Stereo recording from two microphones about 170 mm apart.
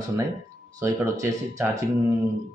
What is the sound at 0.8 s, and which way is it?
Speech, 20° right (ahead or behind).